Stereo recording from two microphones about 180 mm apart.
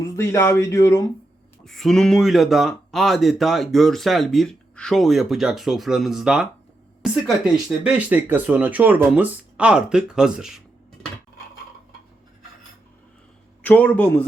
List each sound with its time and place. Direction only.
0.0 s speech: 15° left (ahead or behind)
1.6 s speech: centre (ahead or behind)
13.6 s speech: 10° left (ahead or behind)